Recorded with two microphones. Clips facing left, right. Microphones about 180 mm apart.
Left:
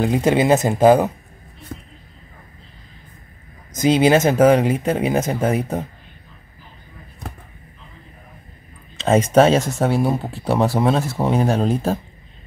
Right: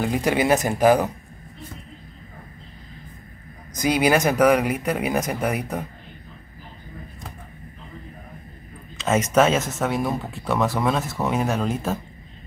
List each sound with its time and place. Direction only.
0.0 s speech: 25° left (ahead or behind)
3.7 s speech: 25° left (ahead or behind)
8.9 s speech: 30° left (ahead or behind)